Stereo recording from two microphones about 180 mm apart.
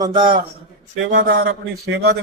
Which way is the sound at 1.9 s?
65° right (ahead or behind).